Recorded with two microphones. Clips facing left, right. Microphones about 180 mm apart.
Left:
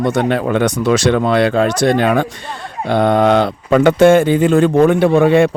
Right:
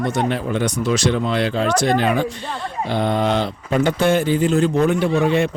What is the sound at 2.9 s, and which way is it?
Speech, 65° left (ahead or behind).